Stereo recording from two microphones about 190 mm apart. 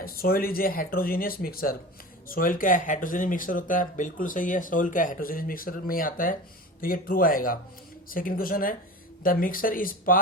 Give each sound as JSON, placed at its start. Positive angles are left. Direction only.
{"t": 0.0, "sound": "speech", "side_deg": 50}